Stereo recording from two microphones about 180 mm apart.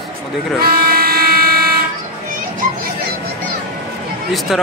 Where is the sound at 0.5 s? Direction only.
55° right (ahead or behind).